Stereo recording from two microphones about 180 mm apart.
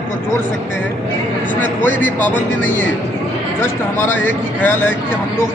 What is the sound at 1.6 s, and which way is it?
Speech, 10° left (ahead or behind).